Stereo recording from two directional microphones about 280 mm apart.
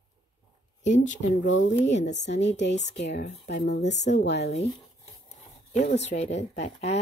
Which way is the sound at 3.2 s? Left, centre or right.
Left.